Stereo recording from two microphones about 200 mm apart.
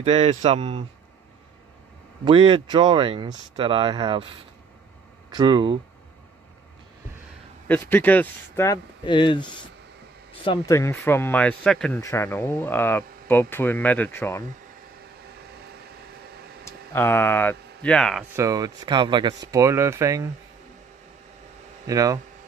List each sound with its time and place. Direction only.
0.0 s speech: 30° right (ahead or behind)
2.2 s speech: 30° right (ahead or behind)
5.3 s speech: 20° right (ahead or behind)
7.6 s speech: 10° left (ahead or behind)
9.0 s speech: 25° left (ahead or behind); by 12.0 s 5° left (ahead or behind)
12.0 s speech: 15° left (ahead or behind)
16.6 s speech: 10° left (ahead or behind)
18.3 s speech: 15° right (ahead or behind)
21.8 s speech: 15° right (ahead or behind)